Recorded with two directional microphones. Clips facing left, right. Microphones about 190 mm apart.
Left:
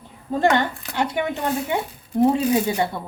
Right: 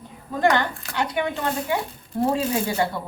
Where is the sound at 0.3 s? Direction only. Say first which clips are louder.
Left 2 dB; 25° left (ahead or behind).